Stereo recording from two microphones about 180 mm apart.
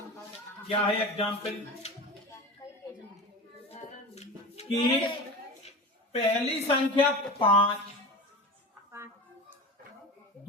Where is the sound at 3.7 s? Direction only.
35° left (ahead or behind).